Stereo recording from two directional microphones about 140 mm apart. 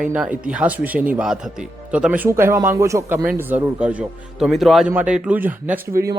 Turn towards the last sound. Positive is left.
turn(degrees=-15)  # may be behind; listen again after turning